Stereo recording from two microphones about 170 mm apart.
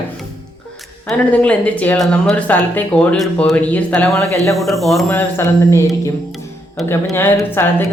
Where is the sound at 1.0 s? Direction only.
10° left (ahead or behind).